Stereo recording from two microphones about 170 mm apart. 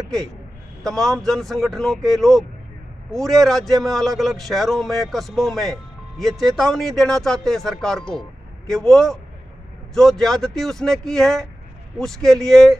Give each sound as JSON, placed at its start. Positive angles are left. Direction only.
{"t": 0.8, "sound": "speech", "side_deg": 0}